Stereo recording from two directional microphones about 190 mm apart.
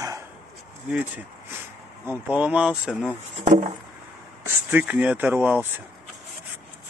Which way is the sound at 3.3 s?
35° right (ahead or behind).